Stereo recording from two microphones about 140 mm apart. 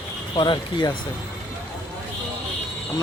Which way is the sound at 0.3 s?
35° left (ahead or behind).